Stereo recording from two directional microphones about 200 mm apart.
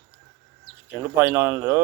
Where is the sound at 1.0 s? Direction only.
10° right (ahead or behind).